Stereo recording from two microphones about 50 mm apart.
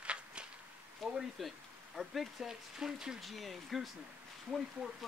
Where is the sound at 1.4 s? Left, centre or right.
Centre.